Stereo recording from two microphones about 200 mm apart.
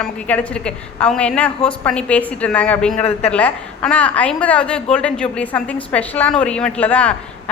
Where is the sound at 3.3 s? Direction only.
5° left (ahead or behind).